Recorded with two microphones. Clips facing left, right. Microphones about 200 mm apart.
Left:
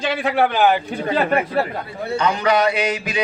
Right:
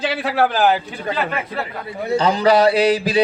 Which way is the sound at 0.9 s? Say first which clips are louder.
Left 4 dB; 55° left (ahead or behind).